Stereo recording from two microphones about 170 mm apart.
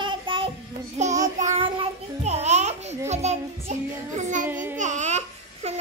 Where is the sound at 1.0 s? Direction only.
45° right (ahead or behind).